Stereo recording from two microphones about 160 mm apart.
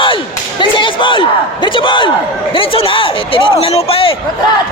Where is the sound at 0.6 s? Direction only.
30° left (ahead or behind).